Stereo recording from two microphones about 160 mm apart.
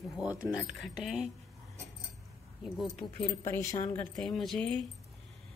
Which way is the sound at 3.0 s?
Centre (ahead or behind).